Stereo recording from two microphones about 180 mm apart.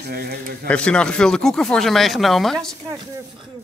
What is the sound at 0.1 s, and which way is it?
Speech, 55° right (ahead or behind).